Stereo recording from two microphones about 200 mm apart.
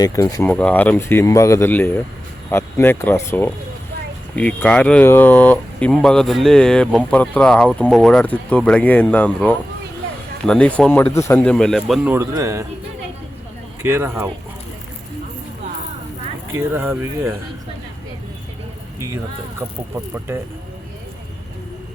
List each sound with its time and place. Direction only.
0.0 s speech: 15° left (ahead or behind)
0.5 s speech: 5° left (ahead or behind)
12.0 s speech: 15° right (ahead or behind)
13.8 s speech: 15° right (ahead or behind)
16.6 s speech: 10° right (ahead or behind)
18.9 s speech: 15° right (ahead or behind)